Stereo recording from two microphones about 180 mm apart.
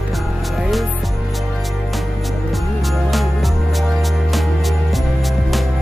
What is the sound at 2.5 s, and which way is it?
Music, centre (ahead or behind).